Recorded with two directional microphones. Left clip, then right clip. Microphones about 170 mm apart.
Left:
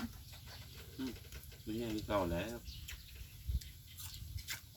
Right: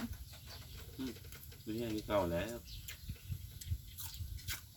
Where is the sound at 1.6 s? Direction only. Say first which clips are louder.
Right 1 dB; 20° right (ahead or behind).